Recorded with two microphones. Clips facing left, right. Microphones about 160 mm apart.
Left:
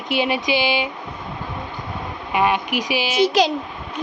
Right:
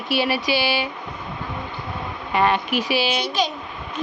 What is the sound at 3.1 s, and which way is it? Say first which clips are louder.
Speech: left 7 dB; 90° left.